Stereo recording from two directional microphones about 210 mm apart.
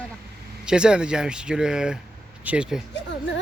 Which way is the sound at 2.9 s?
55° left (ahead or behind).